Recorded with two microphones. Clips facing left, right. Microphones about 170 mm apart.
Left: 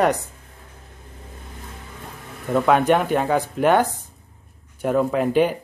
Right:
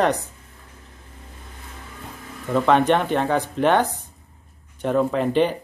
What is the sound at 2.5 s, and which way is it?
Speech, 5° left (ahead or behind).